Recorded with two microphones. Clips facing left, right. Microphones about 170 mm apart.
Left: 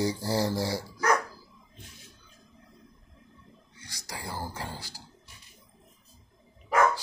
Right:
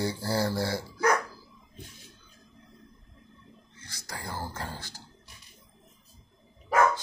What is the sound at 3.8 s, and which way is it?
Music, 15° left (ahead or behind).